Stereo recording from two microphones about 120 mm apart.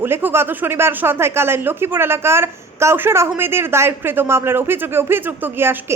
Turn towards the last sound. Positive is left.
turn(degrees=-15)  # may be behind; listen again after turning